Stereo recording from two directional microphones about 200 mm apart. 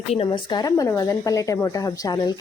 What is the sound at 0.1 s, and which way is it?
Speech, 25° left (ahead or behind).